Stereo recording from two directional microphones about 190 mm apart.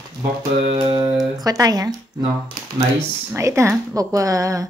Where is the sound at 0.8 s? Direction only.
25° right (ahead or behind).